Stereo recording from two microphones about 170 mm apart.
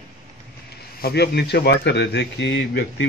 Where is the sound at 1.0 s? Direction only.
70° left (ahead or behind).